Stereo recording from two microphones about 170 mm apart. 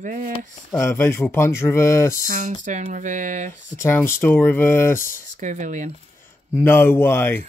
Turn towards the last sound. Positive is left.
turn(degrees=15)  # may be behind; listen again after turning